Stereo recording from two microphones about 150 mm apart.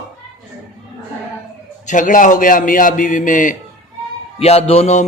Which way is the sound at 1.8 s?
60° left (ahead or behind).